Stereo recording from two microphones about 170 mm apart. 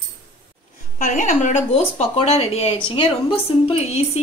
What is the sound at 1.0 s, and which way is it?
Speech, 50° left (ahead or behind).